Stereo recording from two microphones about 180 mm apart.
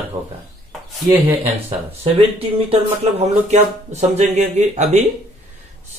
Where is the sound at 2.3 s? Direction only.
35° right (ahead or behind).